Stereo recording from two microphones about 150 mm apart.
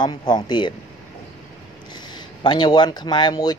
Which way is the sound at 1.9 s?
30° left (ahead or behind).